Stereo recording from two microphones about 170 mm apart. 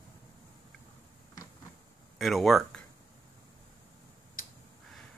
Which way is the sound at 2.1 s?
Centre (ahead or behind).